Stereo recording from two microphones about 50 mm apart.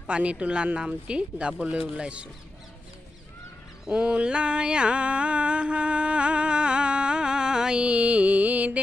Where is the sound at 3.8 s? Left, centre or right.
Right.